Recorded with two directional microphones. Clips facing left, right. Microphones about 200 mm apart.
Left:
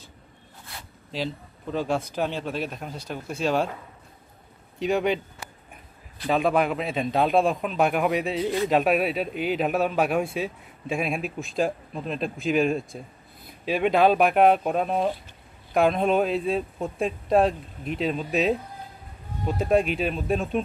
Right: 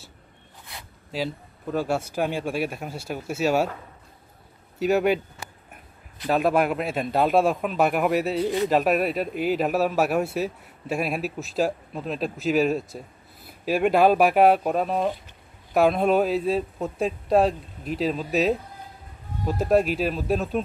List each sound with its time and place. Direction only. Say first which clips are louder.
1.1 s a man's voice: right 1 dB; 10° right (ahead or behind)
4.7 s speech: right 3 dB; 5° right (ahead or behind)
6.2 s speech: right 1 dB; 5° right (ahead or behind)